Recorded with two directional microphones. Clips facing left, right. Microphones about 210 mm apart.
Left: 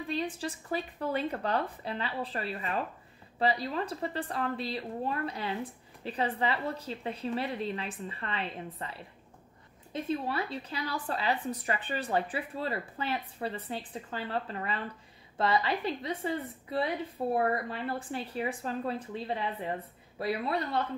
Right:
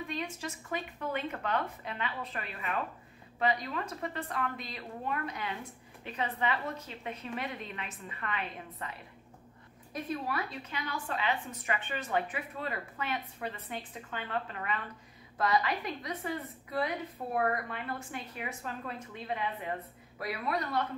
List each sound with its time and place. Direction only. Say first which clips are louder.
0.0 s a woman's voice: left 4 dB; 35° left (ahead or behind)
9.9 s a woman's voice: left 3 dB; 25° left (ahead or behind)